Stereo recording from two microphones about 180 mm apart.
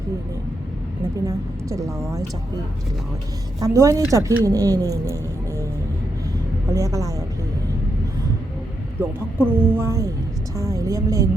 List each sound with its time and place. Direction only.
1.3 s a woman's voice: 15° right (ahead or behind)
3.6 s a woman's voice: 15° right (ahead or behind)
6.7 s a woman's voice: 15° right (ahead or behind)
9.4 s a woman's voice: 10° right (ahead or behind)